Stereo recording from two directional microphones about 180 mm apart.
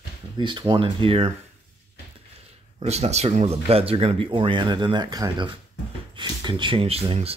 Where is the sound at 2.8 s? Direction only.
35° right (ahead or behind).